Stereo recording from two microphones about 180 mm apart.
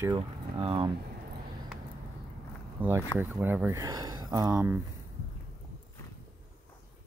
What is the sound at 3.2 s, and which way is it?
Speech, 10° right (ahead or behind).